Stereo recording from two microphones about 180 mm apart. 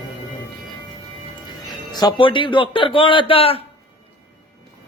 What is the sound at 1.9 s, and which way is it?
A man's voice, 25° left (ahead or behind).